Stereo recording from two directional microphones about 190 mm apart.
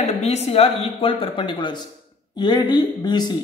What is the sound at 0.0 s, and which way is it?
A woman's voice, 35° left (ahead or behind).